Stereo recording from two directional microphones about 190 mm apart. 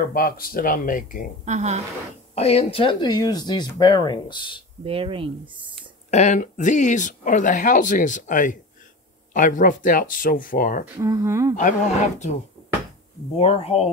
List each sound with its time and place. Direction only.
0.0 s speech: 50° left (ahead or behind)
1.4 s a woman's voice: 35° right (ahead or behind)
2.3 s speech: 30° left (ahead or behind)
4.8 s speech: 30° right (ahead or behind)
6.0 s speech: 35° left (ahead or behind)
11.0 s speech: 15° right (ahead or behind)
11.5 s speech: 40° left (ahead or behind)
13.4 s speech: 30° left (ahead or behind)